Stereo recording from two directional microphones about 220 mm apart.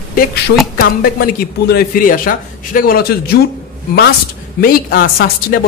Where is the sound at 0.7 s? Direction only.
45° left (ahead or behind).